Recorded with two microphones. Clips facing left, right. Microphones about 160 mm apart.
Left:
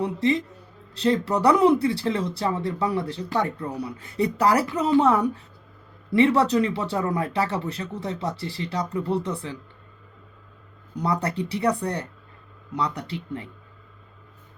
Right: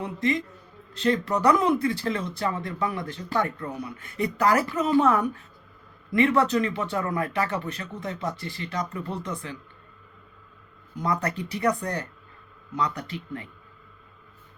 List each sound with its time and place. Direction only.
0.0 s speech: 30° left (ahead or behind)
11.0 s speech: 30° left (ahead or behind)